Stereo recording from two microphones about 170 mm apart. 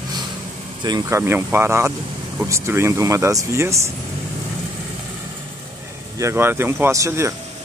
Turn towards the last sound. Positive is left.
turn(degrees=-15)  # may be behind; listen again after turning